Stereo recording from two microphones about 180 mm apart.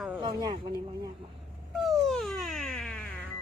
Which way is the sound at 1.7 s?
Centre (ahead or behind).